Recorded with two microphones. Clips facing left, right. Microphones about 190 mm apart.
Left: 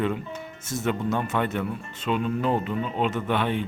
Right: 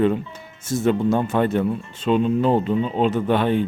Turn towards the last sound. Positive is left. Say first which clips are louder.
# right 6 dB
turn(degrees=-35)  # may be behind; listen again after turning